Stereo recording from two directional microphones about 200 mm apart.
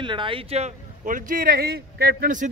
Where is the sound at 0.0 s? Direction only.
25° right (ahead or behind).